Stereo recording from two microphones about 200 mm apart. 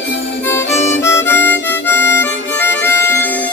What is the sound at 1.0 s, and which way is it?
Harmonica, 15° left (ahead or behind).